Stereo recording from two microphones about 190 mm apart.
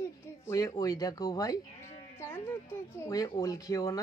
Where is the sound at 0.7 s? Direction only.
20° left (ahead or behind).